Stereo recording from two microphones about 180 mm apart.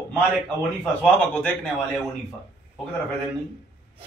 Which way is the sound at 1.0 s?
10° left (ahead or behind).